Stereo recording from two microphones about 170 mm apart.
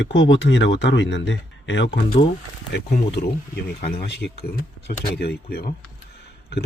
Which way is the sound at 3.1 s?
70° left (ahead or behind).